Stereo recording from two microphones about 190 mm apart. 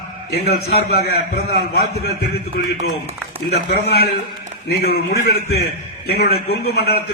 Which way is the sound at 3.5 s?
55° left (ahead or behind).